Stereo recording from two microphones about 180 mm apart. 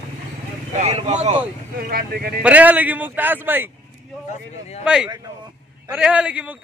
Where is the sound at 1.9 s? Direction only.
55° right (ahead or behind).